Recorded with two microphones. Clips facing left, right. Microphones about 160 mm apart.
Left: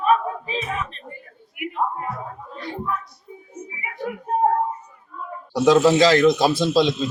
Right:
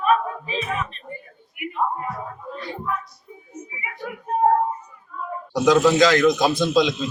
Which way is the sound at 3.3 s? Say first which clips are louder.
Left 3 dB; 30° left (ahead or behind).